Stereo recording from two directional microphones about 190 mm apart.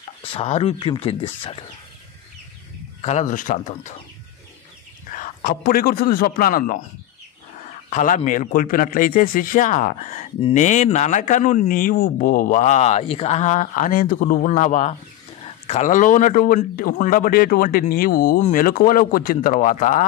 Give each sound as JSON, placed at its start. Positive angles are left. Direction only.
{"t": 0.2, "sound": "speech", "side_deg": 30}
{"t": 3.0, "sound": "speech", "side_deg": 35}
{"t": 5.1, "sound": "a man's voice", "side_deg": 45}
{"t": 7.9, "sound": "a man's voice", "side_deg": 40}